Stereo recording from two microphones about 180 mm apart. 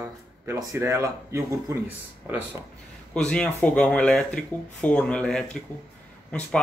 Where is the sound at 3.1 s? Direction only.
5° left (ahead or behind).